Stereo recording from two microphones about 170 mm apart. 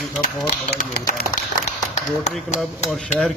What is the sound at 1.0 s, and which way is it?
Speech, 50° left (ahead or behind).